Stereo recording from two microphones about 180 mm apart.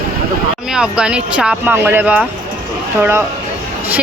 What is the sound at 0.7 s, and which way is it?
Speech, 5° right (ahead or behind).